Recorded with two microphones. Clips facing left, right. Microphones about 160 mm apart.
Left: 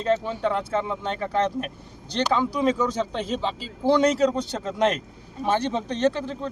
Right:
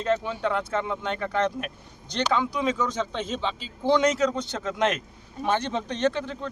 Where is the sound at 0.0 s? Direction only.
35° left (ahead or behind).